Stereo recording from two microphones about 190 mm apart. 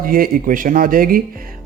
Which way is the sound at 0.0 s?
50° right (ahead or behind).